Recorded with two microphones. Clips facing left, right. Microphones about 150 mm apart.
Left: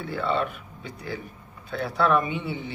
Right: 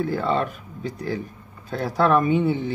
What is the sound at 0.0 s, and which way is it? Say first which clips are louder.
Speech: right 4 dB; 40° right (ahead or behind).